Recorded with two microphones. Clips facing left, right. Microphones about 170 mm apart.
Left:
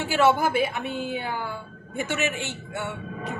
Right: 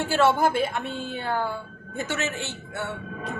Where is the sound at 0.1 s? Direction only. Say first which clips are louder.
Left 1 dB; 15° left (ahead or behind).